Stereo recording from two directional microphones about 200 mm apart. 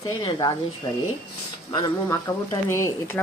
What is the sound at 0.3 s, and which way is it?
Speech, 20° left (ahead or behind).